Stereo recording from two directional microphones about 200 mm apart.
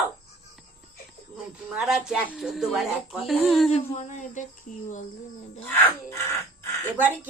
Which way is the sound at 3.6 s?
35° left (ahead or behind).